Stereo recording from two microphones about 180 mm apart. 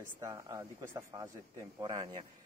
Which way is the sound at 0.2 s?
20° right (ahead or behind).